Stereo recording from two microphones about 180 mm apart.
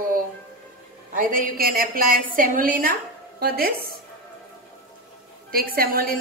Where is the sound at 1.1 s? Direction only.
50° right (ahead or behind).